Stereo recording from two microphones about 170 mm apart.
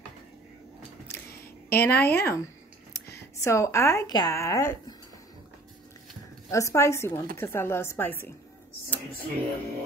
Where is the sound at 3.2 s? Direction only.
15° left (ahead or behind).